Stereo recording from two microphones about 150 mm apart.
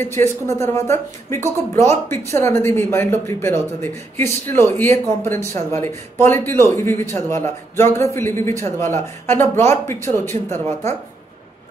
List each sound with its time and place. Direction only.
0.0 s speech: 20° left (ahead or behind)